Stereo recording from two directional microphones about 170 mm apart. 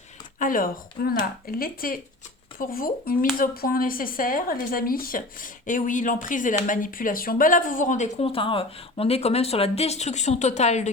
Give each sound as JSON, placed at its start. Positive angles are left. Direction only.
{"t": 0.3, "sound": "a woman's voice", "side_deg": 55}